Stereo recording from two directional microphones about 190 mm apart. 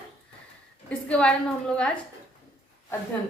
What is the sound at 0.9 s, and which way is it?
Speech, 5° left (ahead or behind).